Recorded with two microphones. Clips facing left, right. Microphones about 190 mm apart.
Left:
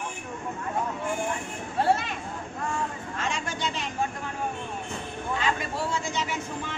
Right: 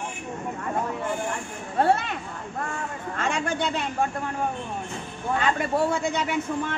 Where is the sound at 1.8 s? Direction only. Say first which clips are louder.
Right 3 dB; 60° right (ahead or behind).